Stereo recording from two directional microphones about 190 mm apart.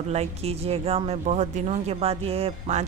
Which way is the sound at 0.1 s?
35° right (ahead or behind).